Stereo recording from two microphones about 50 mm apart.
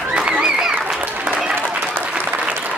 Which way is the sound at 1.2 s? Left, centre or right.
Right.